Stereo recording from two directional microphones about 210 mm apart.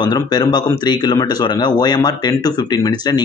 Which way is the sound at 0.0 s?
20° left (ahead or behind).